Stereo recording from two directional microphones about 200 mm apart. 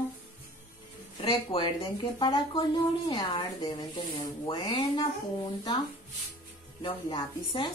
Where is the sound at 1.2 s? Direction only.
25° left (ahead or behind).